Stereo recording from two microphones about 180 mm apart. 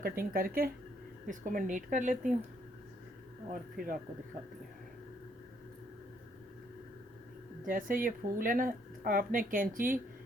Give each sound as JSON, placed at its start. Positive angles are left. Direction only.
{"t": 0.0, "sound": "speech", "side_deg": -55}
{"t": 3.5, "sound": "speech", "side_deg": -55}
{"t": 7.6, "sound": "speech", "side_deg": -50}